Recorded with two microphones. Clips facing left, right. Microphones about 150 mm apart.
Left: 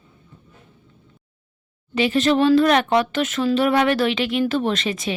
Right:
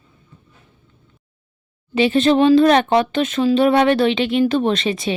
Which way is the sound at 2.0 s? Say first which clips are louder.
Right 3 dB; 25° right (ahead or behind).